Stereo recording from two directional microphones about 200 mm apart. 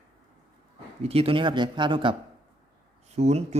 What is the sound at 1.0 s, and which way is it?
A man's voice, 30° right (ahead or behind).